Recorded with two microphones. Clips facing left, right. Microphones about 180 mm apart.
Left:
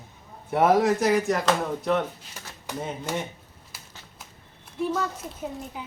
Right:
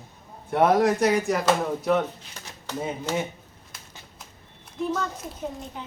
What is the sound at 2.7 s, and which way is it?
Speech, 15° left (ahead or behind).